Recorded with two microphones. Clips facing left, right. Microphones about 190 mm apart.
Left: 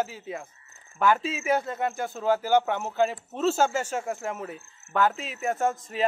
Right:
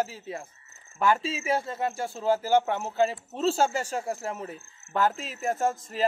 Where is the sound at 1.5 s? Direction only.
30° right (ahead or behind).